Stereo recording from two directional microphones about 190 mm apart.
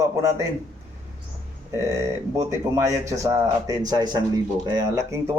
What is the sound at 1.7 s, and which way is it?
A man's voice, 15° right (ahead or behind).